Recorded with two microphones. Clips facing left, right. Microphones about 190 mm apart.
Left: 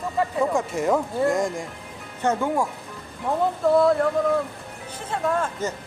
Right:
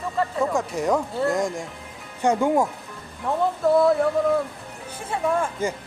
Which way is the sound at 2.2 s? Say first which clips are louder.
Right 3 dB; 15° right (ahead or behind).